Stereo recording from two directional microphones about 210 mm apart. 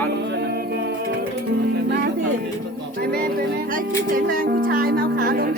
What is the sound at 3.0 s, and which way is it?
Music, 45° right (ahead or behind).